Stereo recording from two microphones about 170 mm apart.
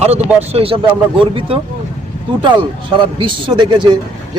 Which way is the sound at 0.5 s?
35° right (ahead or behind).